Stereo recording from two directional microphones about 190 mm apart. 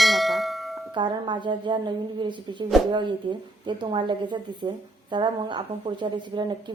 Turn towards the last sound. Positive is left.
turn(degrees=-25)  # may be behind; listen again after turning